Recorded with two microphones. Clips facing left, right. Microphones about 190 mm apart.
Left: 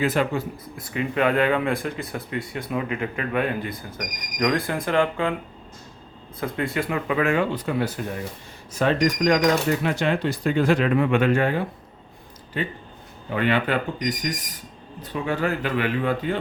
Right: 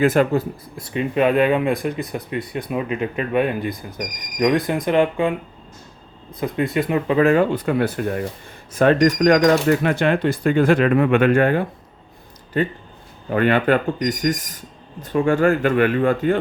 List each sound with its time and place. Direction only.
0.0 s speech: 45° right (ahead or behind)
0.8 s speech: 25° right (ahead or behind)
6.4 s speech: 20° right (ahead or behind); by 7.4 s 35° right (ahead or behind)
7.5 s speech: 55° right (ahead or behind)
12.5 s speech: 45° right (ahead or behind)